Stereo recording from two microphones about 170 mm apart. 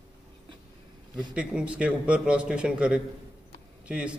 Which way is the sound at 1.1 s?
5° right (ahead or behind).